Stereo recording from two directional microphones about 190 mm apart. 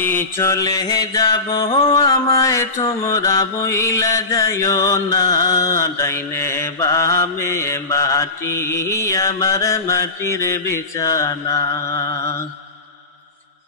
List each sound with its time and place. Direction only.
0.0 s mantra: 10° left (ahead or behind)